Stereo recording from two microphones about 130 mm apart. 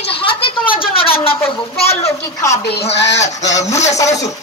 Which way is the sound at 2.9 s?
60° left (ahead or behind).